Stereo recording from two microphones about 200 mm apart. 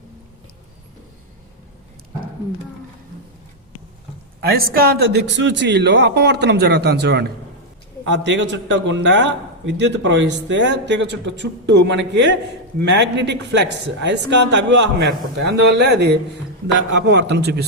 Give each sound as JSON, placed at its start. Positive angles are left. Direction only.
{"t": 4.4, "sound": "a man's voice", "side_deg": -50}